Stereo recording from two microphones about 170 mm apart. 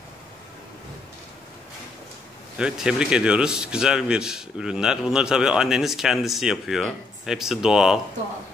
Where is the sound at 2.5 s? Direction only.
5° right (ahead or behind).